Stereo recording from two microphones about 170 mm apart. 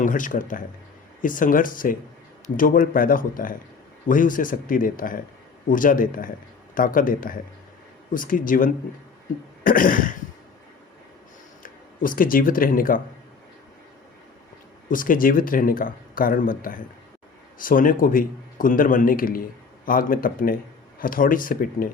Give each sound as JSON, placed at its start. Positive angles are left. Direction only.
{"t": 0.0, "sound": "a man's voice", "side_deg": 50}
{"t": 11.6, "sound": "speech", "side_deg": 55}
{"t": 14.8, "sound": "a man's voice", "side_deg": 55}